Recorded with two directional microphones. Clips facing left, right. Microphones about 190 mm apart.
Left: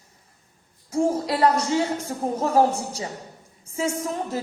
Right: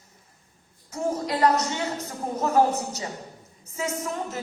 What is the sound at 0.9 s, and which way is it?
A woman's voice, 30° left (ahead or behind).